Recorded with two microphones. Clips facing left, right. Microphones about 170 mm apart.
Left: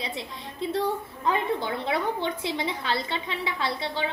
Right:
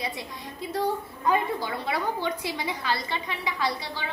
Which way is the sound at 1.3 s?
25° left (ahead or behind).